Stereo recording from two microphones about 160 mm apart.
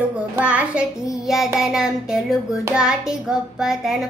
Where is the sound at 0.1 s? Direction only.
10° right (ahead or behind).